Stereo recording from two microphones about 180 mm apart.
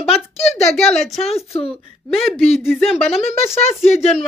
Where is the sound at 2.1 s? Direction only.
Centre (ahead or behind).